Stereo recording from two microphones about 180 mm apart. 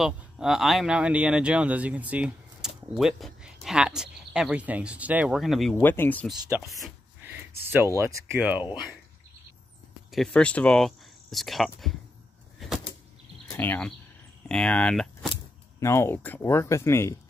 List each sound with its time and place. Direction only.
0.0 s speech: centre (ahead or behind)
5.8 s speech: 10° left (ahead or behind)
6.3 s speech: 15° right (ahead or behind)
7.2 s a sound: 10° right (ahead or behind)
8.3 s speech: 10° right (ahead or behind)
10.1 s speech: 5° left (ahead or behind)
12.5 s vehicle: centre (ahead or behind)
13.5 s speech: 10° left (ahead or behind)